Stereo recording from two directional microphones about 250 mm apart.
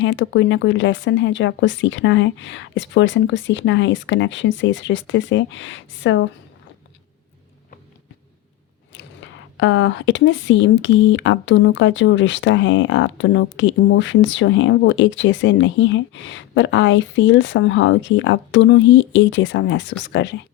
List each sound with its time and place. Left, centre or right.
0.0 s speech: left
8.9 s speech: left